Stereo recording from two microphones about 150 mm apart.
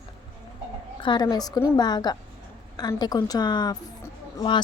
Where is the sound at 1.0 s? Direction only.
30° left (ahead or behind).